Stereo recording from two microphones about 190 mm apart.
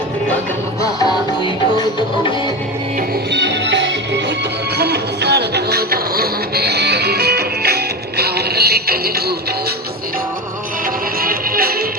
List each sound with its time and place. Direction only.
0.8 s music: 20° left (ahead or behind)
3.3 s music: 65° right (ahead or behind)
11.2 s music: 50° right (ahead or behind)